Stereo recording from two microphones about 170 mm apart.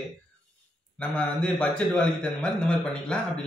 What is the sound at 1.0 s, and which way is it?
A man's voice, 5° left (ahead or behind).